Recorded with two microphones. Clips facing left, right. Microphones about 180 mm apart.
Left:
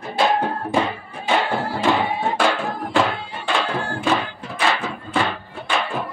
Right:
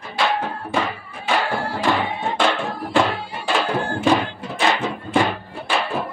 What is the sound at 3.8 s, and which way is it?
Music, 20° right (ahead or behind).